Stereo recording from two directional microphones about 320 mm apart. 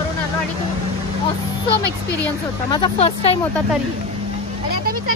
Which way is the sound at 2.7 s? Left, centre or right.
Centre.